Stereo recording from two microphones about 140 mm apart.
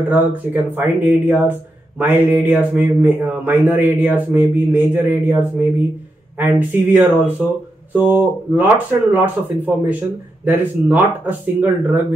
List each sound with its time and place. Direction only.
0.1 s speech: 10° right (ahead or behind)